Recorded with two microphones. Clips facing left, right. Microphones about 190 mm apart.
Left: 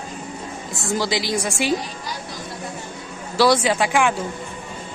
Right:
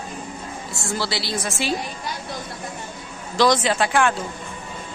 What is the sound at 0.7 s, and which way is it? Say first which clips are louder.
A woman's voice: left 4 dB; 20° left (ahead or behind).